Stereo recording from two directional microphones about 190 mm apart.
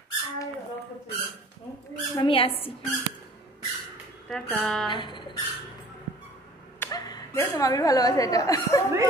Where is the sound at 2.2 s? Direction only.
30° left (ahead or behind).